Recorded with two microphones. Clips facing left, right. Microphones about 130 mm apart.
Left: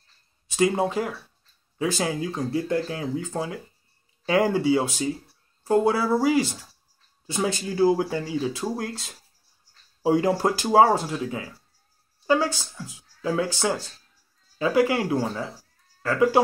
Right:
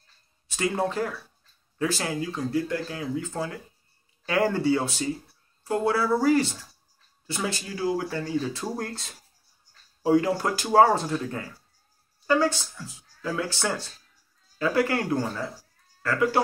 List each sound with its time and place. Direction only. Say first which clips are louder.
0.6 s speech: left 4 dB; 15° left (ahead or behind)
8.1 s speech: left 1 dB; 15° left (ahead or behind)
10.1 s speech: left 1 dB; 30° left (ahead or behind)
10.7 s speech: even; 15° left (ahead or behind)